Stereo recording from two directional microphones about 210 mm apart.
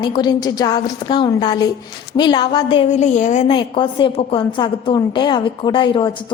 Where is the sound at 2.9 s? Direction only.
35° left (ahead or behind).